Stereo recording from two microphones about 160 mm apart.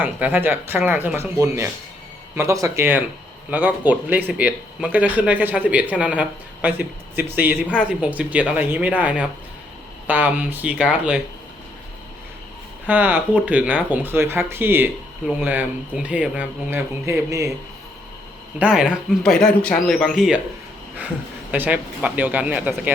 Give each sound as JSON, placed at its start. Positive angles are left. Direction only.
{"t": 0.0, "sound": "speech", "side_deg": -10}
{"t": 12.9, "sound": "speech", "side_deg": -10}
{"t": 18.6, "sound": "speech", "side_deg": -5}
{"t": 21.5, "sound": "speech", "side_deg": -10}